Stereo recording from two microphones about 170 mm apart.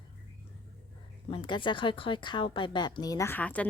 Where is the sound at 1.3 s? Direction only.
30° left (ahead or behind).